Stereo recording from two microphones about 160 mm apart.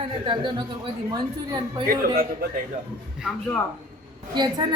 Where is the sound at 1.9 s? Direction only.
70° right (ahead or behind).